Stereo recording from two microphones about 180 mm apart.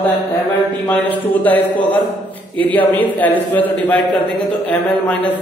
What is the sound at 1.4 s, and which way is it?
A man's voice, 10° left (ahead or behind).